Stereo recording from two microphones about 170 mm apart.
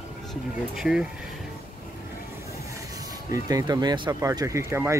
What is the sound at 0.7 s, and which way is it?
Speech, 5° right (ahead or behind).